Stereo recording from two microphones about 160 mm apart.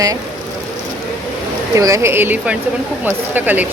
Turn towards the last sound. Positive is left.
turn(degrees=-10)  # may be behind; listen again after turning